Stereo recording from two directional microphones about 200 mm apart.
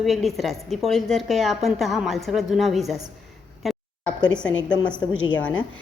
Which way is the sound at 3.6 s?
Centre (ahead or behind).